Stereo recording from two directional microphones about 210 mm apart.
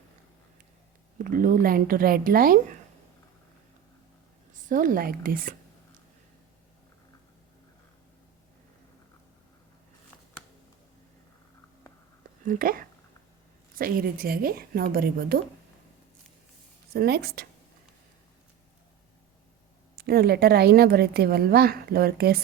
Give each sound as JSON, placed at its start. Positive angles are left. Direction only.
{"t": 1.2, "sound": "a woman's voice", "side_deg": -40}
{"t": 4.7, "sound": "speech", "side_deg": -40}
{"t": 12.5, "sound": "a woman's voice", "side_deg": -45}
{"t": 16.9, "sound": "a woman's voice", "side_deg": -50}
{"t": 20.0, "sound": "a woman's voice", "side_deg": -45}